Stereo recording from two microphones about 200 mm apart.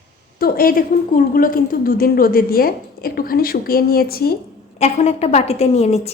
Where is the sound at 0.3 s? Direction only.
45° left (ahead or behind).